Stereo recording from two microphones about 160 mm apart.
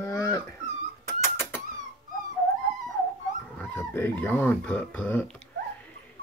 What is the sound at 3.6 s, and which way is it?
Speech, 15° left (ahead or behind).